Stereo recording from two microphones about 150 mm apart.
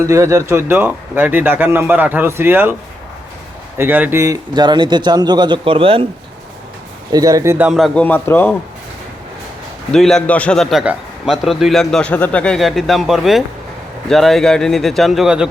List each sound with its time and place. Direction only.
0.0 s speech: 20° right (ahead or behind)
3.8 s a man's voice: 10° right (ahead or behind); by 6.1 s 35° right (ahead or behind)
7.1 s a man's voice: 25° right (ahead or behind)
7.7 s a man's voice: centre (ahead or behind)
9.9 s a man's voice: 5° left (ahead or behind)